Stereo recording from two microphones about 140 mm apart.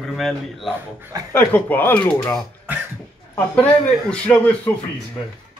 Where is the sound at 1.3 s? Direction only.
15° left (ahead or behind).